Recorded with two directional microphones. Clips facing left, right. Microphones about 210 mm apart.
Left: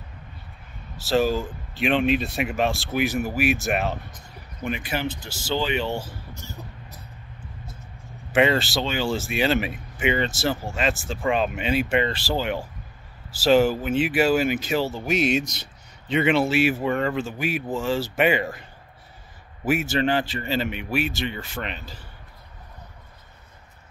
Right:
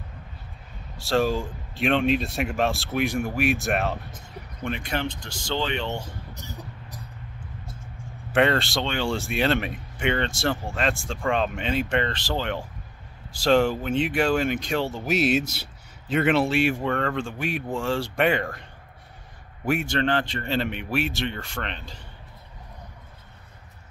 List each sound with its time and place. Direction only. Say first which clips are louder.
0.9 s speech: left 2 dB; centre (ahead or behind)
6.3 s a sound: even; 15° right (ahead or behind)
8.3 s speech: left 1 dB; 5° left (ahead or behind)